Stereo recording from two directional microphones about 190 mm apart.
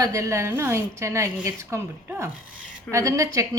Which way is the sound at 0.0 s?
15° right (ahead or behind).